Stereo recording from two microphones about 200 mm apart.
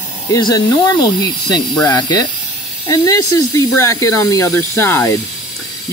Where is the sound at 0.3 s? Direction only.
20° left (ahead or behind).